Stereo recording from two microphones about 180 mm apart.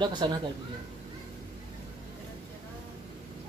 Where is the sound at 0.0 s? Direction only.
25° right (ahead or behind).